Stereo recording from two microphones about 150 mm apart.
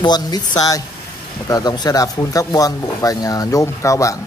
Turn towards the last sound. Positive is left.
turn(degrees=20)  # may be behind; listen again after turning